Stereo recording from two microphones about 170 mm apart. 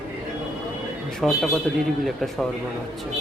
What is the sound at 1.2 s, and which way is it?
Speech, centre (ahead or behind).